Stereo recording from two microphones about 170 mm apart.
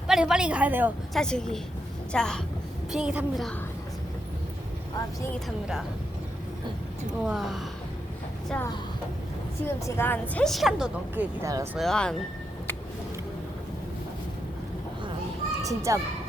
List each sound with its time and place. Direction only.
0.1 s a woman's voice: 5° right (ahead or behind)
1.1 s a woman's voice: 5° left (ahead or behind)
7.1 s a woman's voice: 5° right (ahead or behind)
9.6 s a woman's voice: 15° left (ahead or behind); by 11.8 s 15° right (ahead or behind)
11.8 s a woman's voice: 5° left (ahead or behind)
15.6 s a child's voice: 20° right (ahead or behind)